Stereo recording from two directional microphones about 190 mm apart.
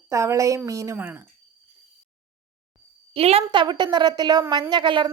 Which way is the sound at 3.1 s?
30° right (ahead or behind).